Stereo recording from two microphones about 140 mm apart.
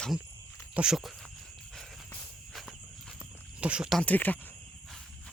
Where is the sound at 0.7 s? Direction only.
5° right (ahead or behind).